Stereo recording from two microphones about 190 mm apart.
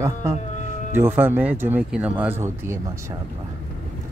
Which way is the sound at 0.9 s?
10° right (ahead or behind).